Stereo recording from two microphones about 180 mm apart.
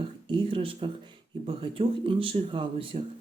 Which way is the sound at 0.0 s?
25° right (ahead or behind).